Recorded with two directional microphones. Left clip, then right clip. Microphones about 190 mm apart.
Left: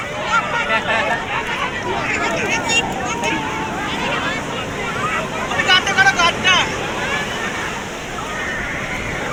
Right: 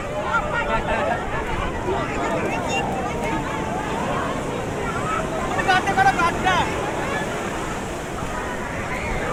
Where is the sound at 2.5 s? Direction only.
45° right (ahead or behind).